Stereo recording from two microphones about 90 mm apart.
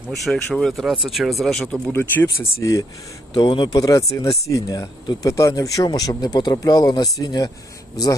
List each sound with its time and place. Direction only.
0.1 s speech: centre (ahead or behind)
1.9 s speech: 25° left (ahead or behind)
3.3 s speech: 60° left (ahead or behind)
3.8 s speech: 40° left (ahead or behind)